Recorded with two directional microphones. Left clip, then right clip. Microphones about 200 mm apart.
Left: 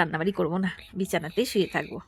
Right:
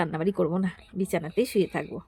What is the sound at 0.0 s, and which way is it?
Speech, centre (ahead or behind).